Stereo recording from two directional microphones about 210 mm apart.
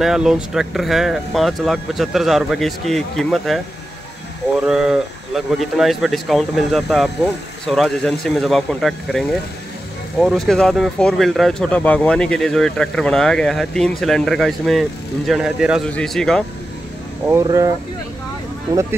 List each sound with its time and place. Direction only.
0.0 s speech: centre (ahead or behind)
4.6 s speech: centre (ahead or behind)
17.3 s speech: 15° right (ahead or behind)